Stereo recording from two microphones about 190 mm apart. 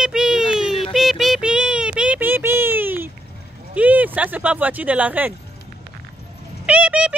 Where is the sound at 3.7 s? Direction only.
10° right (ahead or behind).